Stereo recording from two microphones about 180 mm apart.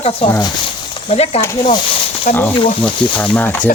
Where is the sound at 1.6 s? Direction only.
30° left (ahead or behind).